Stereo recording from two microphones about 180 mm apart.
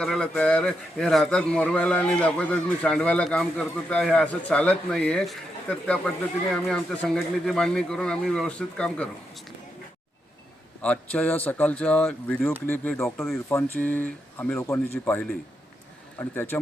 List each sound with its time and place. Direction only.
0.0 s a man's voice: 5° left (ahead or behind)
10.8 s speech: 5° left (ahead or behind)
13.5 s speech: 10° left (ahead or behind)
16.3 s speech: 10° left (ahead or behind)